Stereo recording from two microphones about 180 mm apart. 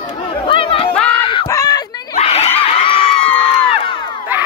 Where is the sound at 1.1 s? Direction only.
25° left (ahead or behind).